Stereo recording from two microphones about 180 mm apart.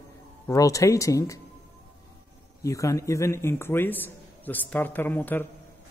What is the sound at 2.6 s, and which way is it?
A man's voice, 15° left (ahead or behind).